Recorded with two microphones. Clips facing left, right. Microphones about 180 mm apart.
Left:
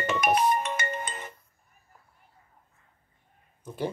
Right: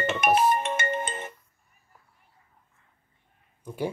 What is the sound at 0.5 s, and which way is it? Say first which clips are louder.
Music: right 2 dB; 25° right (ahead or behind).